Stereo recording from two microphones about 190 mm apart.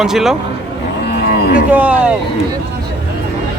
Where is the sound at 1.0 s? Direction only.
55° left (ahead or behind).